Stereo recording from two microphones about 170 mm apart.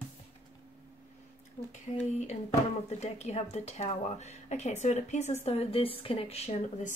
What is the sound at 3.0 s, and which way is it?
A woman's voice, 40° left (ahead or behind).